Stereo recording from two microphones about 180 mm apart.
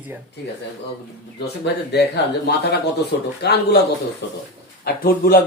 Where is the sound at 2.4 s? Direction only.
65° left (ahead or behind).